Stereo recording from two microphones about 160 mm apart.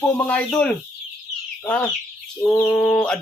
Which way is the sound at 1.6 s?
10° left (ahead or behind).